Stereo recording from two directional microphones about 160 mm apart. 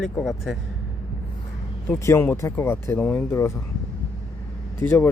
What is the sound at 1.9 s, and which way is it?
Speech, 15° left (ahead or behind).